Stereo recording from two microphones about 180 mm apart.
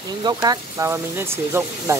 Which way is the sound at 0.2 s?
25° right (ahead or behind).